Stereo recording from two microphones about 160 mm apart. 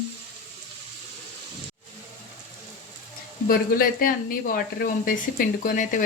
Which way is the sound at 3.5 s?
65° left (ahead or behind).